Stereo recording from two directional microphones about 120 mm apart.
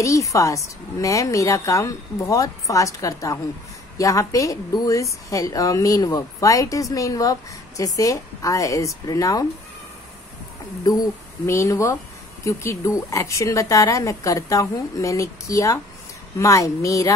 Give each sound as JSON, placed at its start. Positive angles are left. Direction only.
{"t": 0.0, "sound": "a woman's voice", "side_deg": 25}
{"t": 10.8, "sound": "a woman's voice", "side_deg": 30}